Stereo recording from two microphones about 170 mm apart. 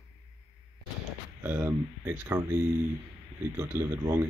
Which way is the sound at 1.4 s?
10° right (ahead or behind).